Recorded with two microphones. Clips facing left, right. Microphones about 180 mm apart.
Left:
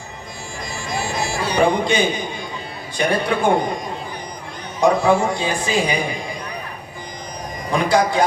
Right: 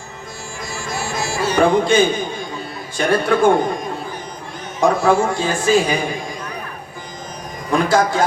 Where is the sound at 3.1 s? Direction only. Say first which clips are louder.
Right 5 dB; 45° right (ahead or behind).